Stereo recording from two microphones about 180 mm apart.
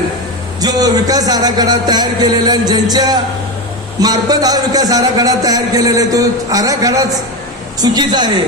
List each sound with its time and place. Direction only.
0.6 s speech: 20° right (ahead or behind)